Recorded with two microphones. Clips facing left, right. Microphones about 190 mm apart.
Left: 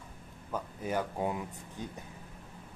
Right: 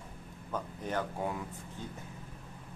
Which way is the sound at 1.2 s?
20° left (ahead or behind).